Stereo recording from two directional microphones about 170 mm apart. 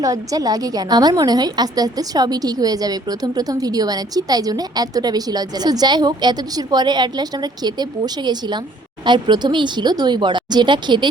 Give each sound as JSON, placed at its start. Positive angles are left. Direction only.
{"t": 0.0, "sound": "a woman's voice", "side_deg": -20}